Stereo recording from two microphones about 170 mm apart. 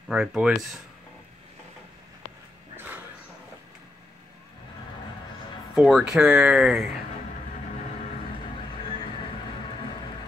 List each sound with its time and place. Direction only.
0.1 s speech: 5° right (ahead or behind)
5.8 s speech: 5° right (ahead or behind)